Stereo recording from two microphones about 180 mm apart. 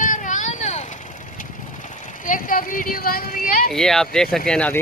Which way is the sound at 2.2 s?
50° left (ahead or behind).